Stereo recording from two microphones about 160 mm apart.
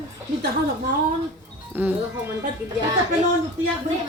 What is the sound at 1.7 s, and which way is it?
Speech, 10° right (ahead or behind).